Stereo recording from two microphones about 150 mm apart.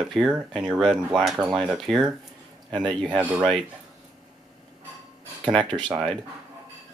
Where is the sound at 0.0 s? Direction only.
Centre (ahead or behind).